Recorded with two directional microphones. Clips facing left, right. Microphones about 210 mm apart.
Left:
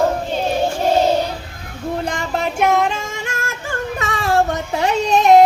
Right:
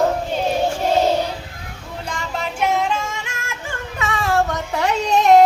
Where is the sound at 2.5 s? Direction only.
55° left (ahead or behind).